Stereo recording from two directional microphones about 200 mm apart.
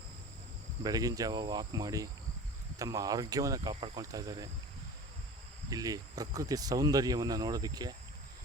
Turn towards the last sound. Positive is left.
turn(degrees=-20)  # may be behind; listen again after turning